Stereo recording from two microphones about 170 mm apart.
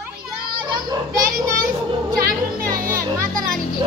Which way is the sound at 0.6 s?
25° right (ahead or behind).